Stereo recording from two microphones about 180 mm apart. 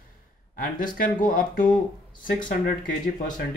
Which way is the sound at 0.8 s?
50° left (ahead or behind).